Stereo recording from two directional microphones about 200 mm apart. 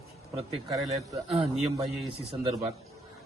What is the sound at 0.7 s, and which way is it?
Speech, 15° right (ahead or behind).